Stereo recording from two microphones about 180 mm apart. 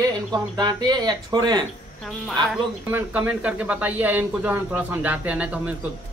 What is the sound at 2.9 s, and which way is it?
Speech, 10° right (ahead or behind).